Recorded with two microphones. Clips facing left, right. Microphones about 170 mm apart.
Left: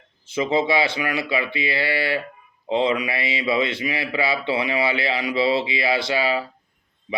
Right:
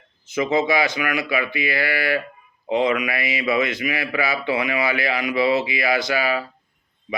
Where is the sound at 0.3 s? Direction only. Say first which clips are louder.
Right 1 dB; 30° left (ahead or behind).